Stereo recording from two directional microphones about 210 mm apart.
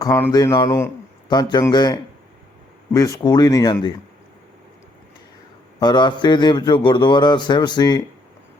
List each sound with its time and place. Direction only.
0.0 s a man's voice: 15° left (ahead or behind)
5.8 s a man's voice: 20° left (ahead or behind)